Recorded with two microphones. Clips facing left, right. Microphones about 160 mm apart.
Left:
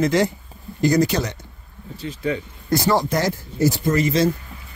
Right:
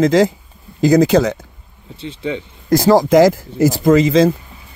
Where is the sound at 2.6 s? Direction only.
90° right.